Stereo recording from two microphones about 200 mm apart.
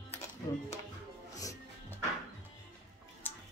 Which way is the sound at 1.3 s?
15° left (ahead or behind).